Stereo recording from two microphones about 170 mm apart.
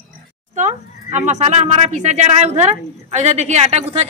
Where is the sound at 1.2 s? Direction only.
45° right (ahead or behind).